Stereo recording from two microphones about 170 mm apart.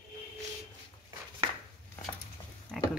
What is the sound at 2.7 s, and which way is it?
Pig, centre (ahead or behind).